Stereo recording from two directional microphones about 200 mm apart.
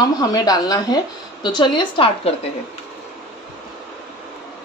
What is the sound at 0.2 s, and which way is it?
A woman's voice, 20° left (ahead or behind).